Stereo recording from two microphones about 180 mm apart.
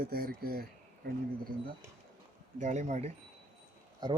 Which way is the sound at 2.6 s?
40° right (ahead or behind).